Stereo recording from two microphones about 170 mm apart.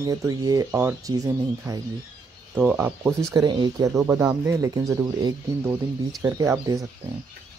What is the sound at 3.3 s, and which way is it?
Speech, 25° right (ahead or behind).